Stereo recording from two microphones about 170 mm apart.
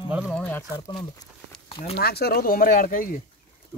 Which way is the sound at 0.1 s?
5° right (ahead or behind).